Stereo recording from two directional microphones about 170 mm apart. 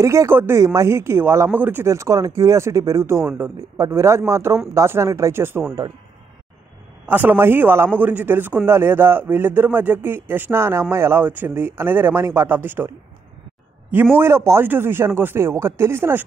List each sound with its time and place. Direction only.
0.0 s a man's voice: 15° right (ahead or behind)
7.1 s a man's voice: 10° right (ahead or behind)
14.1 s a man's voice: 15° right (ahead or behind)